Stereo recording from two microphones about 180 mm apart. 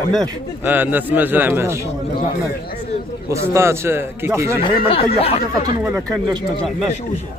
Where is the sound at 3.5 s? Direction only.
15° right (ahead or behind).